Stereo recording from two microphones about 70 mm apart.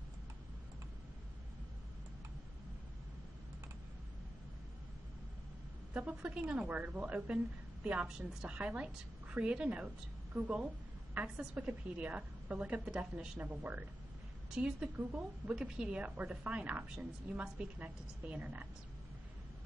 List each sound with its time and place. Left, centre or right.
5.9 s a woman's voice: centre
11.1 s a woman's voice: centre
13.4 s speech: right
14.5 s a woman's voice: centre